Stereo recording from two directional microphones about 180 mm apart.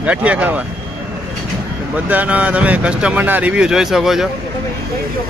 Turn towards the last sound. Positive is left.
turn(degrees=0)  # may be behind; listen again after turning